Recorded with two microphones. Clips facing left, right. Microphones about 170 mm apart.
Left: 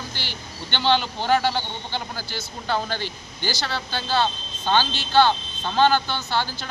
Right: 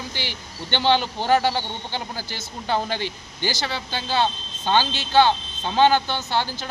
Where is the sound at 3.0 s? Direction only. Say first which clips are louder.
Right 3 dB; 50° right (ahead or behind).